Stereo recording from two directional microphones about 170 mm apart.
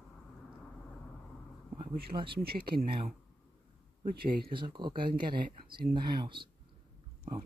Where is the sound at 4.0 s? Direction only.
65° right (ahead or behind).